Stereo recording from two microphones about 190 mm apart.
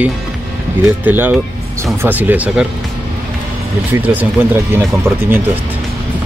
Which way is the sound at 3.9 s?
10° right (ahead or behind).